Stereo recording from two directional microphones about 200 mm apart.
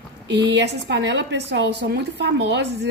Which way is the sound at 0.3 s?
60° right (ahead or behind).